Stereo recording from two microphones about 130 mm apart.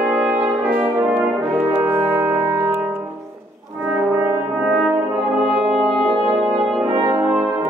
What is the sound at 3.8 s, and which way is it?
Brass instrument, 10° right (ahead or behind).